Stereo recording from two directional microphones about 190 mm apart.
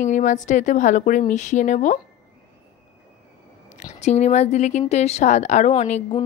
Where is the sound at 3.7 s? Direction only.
35° left (ahead or behind).